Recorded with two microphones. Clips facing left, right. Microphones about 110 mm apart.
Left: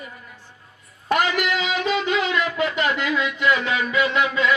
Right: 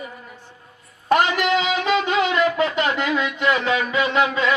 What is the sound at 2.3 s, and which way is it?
Music, 25° right (ahead or behind).